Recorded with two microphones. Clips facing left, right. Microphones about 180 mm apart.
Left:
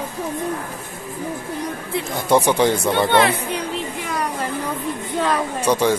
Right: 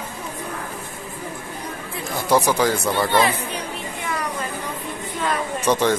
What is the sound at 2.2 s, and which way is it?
Speech, 25° left (ahead or behind).